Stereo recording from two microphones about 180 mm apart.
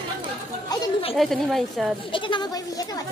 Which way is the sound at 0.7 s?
30° left (ahead or behind).